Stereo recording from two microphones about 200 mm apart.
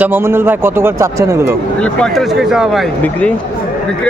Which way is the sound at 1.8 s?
5° left (ahead or behind).